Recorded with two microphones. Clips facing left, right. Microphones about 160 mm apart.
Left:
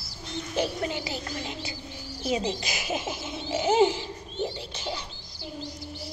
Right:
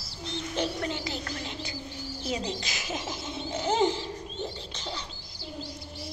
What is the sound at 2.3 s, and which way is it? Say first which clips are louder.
Speech: left 5 dB; 10° left (ahead or behind).